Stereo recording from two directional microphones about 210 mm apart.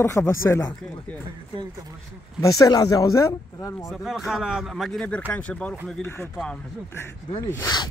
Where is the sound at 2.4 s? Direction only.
15° left (ahead or behind).